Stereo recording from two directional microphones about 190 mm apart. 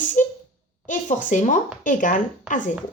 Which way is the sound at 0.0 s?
40° left (ahead or behind).